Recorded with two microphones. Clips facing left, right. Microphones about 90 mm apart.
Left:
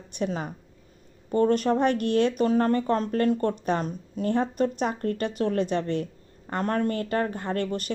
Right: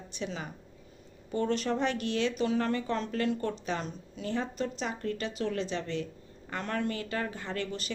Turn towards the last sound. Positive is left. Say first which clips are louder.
# left 7 dB
turn(degrees=55)  # may be behind; listen again after turning